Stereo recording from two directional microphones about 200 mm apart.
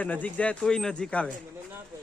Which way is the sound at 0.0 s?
5° left (ahead or behind).